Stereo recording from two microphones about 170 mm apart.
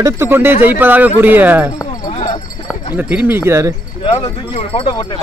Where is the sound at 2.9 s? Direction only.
10° right (ahead or behind).